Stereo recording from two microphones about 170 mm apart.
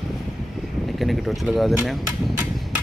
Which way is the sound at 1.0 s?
Centre (ahead or behind).